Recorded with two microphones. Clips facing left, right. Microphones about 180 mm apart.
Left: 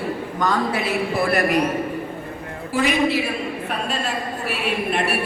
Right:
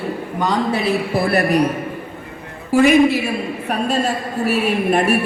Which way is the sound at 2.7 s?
50° right (ahead or behind).